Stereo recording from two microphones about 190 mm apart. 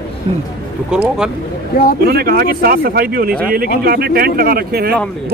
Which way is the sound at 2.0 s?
55° right (ahead or behind).